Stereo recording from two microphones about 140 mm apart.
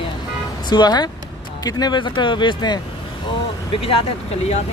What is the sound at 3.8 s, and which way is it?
Speech, 45° left (ahead or behind).